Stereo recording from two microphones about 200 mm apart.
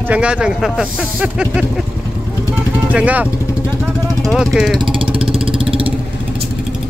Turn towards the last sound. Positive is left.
turn(degrees=-25)  # may be behind; listen again after turning